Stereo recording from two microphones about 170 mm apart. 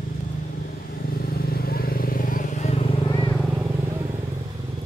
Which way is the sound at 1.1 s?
65° left (ahead or behind).